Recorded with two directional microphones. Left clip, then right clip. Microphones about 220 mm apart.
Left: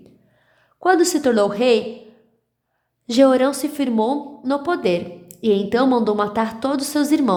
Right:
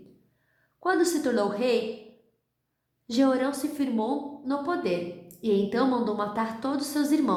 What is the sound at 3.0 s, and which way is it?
A woman's voice, 45° left (ahead or behind).